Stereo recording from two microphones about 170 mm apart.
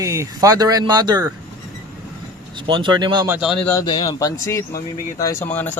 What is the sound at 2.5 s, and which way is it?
Speech, 25° right (ahead or behind).